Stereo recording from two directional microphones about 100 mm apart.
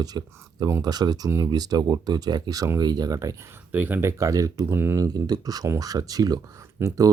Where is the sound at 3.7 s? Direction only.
20° right (ahead or behind).